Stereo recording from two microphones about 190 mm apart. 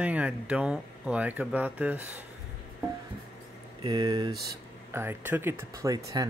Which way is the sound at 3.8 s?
20° right (ahead or behind).